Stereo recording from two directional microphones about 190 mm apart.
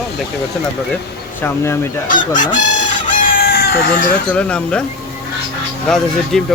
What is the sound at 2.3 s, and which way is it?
Chicken, 40° left (ahead or behind).